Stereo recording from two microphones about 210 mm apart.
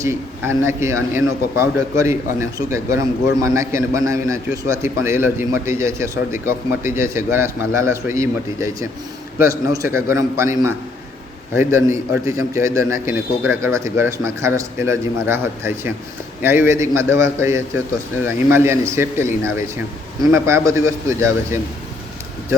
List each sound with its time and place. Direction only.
0.0 s a man's voice: 10° right (ahead or behind)